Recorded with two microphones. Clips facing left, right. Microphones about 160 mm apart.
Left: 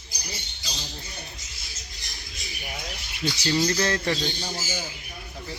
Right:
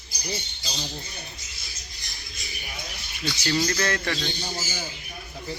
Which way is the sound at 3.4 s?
15° left (ahead or behind).